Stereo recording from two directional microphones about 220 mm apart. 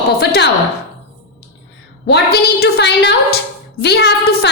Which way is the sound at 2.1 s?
45° left (ahead or behind).